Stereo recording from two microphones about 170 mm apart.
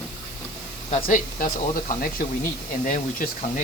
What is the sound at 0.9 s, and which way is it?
Speech, 50° left (ahead or behind).